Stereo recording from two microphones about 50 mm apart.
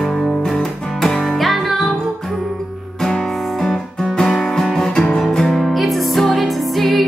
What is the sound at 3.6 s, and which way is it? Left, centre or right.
Music, centre.